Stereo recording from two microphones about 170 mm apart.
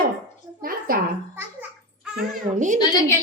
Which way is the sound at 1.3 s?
10° right (ahead or behind).